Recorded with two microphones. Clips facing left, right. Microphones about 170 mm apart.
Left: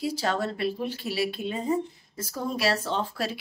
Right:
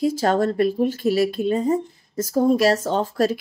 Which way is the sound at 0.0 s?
45° right (ahead or behind).